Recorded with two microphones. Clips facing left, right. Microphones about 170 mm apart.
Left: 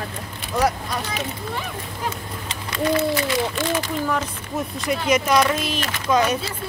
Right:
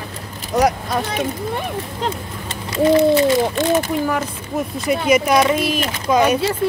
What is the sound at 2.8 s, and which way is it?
Speech, 20° right (ahead or behind).